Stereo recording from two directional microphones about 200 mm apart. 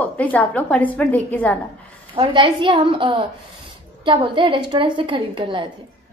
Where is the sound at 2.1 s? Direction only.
25° right (ahead or behind).